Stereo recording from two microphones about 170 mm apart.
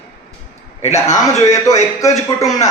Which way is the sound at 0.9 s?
15° left (ahead or behind).